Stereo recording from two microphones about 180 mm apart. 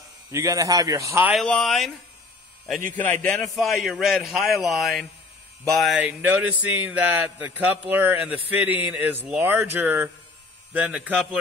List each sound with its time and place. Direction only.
0.3 s mantra: 15° right (ahead or behind)
1.3 s speech: centre (ahead or behind)
3.0 s a man's voice: 5° left (ahead or behind)
5.6 s mantra: centre (ahead or behind)